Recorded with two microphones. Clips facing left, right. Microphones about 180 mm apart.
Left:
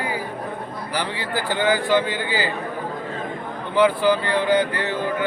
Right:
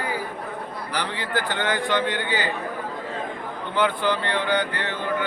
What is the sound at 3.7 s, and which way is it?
Speech, 5° left (ahead or behind).